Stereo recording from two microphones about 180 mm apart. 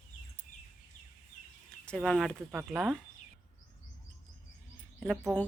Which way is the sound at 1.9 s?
5° left (ahead or behind).